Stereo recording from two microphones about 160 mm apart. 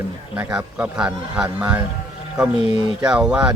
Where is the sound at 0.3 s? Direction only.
10° right (ahead or behind).